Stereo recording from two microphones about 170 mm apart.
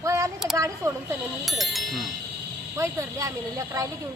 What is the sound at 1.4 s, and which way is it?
Speech, centre (ahead or behind).